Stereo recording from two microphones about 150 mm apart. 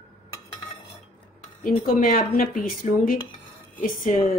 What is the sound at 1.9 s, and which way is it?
A woman's voice, 70° left (ahead or behind).